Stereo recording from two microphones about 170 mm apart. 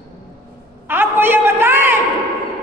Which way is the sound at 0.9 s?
10° right (ahead or behind).